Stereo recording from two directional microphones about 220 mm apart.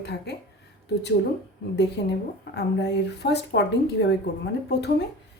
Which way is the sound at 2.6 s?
50° left (ahead or behind).